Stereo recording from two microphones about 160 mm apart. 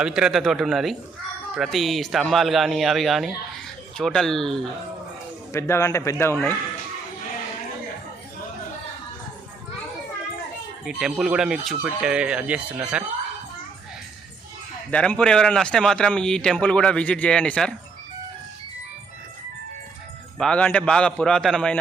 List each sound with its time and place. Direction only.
0.0 s speech: 5° right (ahead or behind)
5.5 s speech: 15° left (ahead or behind)
10.8 s speech: 5° right (ahead or behind)
14.8 s speech: 10° left (ahead or behind)
20.4 s speech: 5° left (ahead or behind)